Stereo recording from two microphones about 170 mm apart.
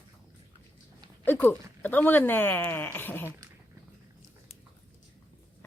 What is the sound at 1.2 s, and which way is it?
Speech, 10° left (ahead or behind).